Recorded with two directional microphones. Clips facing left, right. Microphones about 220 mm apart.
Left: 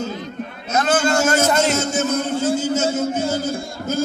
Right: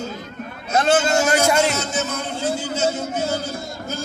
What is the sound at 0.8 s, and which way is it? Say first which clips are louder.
Speech: even; 25° right (ahead or behind).